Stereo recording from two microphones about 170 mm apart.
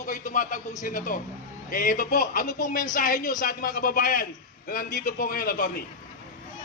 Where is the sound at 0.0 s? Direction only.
50° left (ahead or behind).